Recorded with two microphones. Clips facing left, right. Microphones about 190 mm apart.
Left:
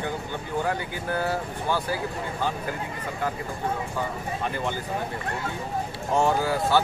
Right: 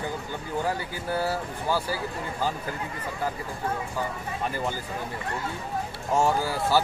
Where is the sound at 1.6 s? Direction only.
5° right (ahead or behind).